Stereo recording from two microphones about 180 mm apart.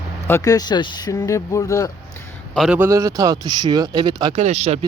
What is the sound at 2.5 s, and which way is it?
Speech, centre (ahead or behind).